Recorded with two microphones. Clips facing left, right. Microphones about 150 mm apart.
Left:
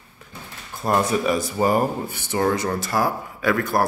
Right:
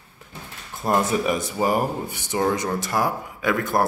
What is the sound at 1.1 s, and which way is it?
Speech, 20° right (ahead or behind).